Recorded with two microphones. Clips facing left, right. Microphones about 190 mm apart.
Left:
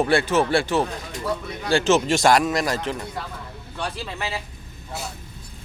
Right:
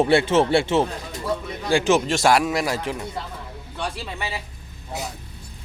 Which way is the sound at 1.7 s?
10° right (ahead or behind).